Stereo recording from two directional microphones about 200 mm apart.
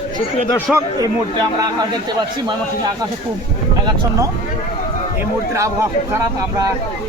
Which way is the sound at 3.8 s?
20° right (ahead or behind).